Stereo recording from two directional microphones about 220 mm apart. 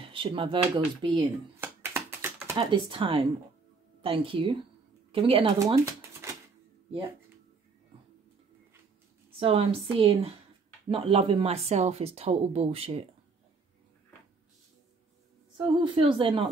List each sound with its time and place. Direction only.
0.0 s a woman's voice: 25° right (ahead or behind)
1.6 s a sound: 10° right (ahead or behind)
4.0 s a woman's voice: 25° right (ahead or behind)
9.4 s a woman's voice: 25° right (ahead or behind)
15.5 s a woman's voice: 20° right (ahead or behind)